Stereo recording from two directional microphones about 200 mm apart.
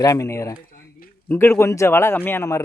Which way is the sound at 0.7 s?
45° left (ahead or behind).